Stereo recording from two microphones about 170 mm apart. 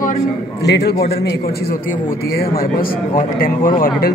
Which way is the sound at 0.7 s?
80° left.